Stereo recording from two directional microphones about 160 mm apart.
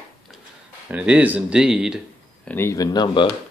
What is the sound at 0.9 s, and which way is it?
Speech, 10° right (ahead or behind).